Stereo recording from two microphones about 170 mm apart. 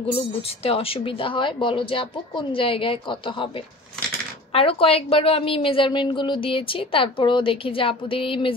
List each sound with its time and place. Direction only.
0.7 s a woman's voice: 35° left (ahead or behind)
4.5 s a woman's voice: 35° left (ahead or behind)